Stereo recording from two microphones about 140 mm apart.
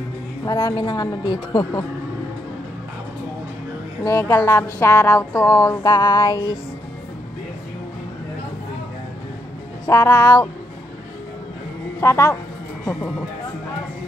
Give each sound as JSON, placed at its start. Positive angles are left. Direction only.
{"t": 0.5, "sound": "speech", "side_deg": 25}
{"t": 4.0, "sound": "speech", "side_deg": 20}
{"t": 9.8, "sound": "speech", "side_deg": 20}
{"t": 12.0, "sound": "speech", "side_deg": 20}